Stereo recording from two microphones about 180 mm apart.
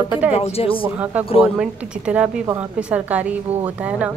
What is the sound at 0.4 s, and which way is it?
Speech, 35° left (ahead or behind).